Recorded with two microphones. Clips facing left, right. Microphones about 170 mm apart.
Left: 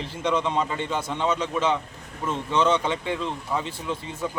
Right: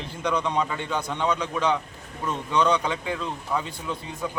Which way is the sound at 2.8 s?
Centre (ahead or behind).